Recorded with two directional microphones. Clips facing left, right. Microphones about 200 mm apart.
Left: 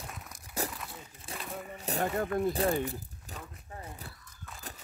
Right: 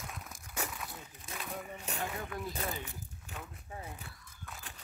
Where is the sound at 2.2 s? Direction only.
50° left (ahead or behind).